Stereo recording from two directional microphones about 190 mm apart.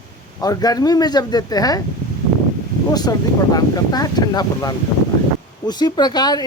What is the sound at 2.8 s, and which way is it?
Speech, 20° left (ahead or behind).